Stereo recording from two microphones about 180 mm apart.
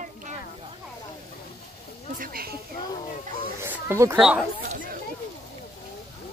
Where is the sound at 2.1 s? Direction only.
50° right (ahead or behind).